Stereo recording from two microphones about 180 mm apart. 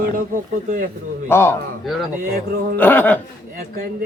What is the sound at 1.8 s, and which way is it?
Speech, centre (ahead or behind).